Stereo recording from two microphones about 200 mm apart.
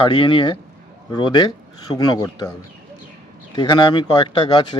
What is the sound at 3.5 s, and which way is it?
A man's voice, 20° left (ahead or behind).